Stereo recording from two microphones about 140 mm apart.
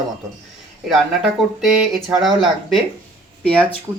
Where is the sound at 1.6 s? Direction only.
Centre (ahead or behind).